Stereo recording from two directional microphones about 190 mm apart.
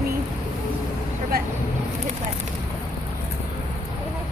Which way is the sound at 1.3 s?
55° right (ahead or behind).